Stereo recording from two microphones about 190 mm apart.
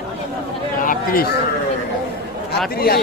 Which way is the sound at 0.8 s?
50° left (ahead or behind).